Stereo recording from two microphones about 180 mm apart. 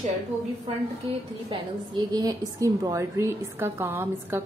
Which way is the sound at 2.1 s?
20° right (ahead or behind).